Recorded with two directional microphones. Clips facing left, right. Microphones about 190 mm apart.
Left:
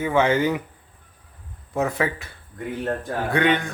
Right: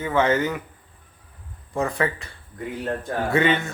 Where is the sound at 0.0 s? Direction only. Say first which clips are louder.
Left 1 dB; 10° left (ahead or behind).